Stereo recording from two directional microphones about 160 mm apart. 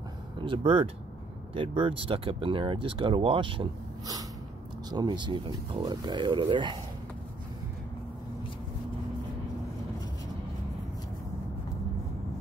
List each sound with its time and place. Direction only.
0.4 s speech: 35° right (ahead or behind)
4.9 s speech: 30° right (ahead or behind)